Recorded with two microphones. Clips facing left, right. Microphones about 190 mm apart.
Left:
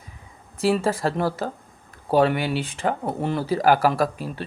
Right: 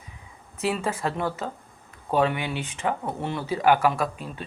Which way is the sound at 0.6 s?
35° left (ahead or behind).